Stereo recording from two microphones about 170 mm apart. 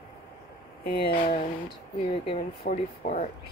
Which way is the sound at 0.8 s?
60° left (ahead or behind).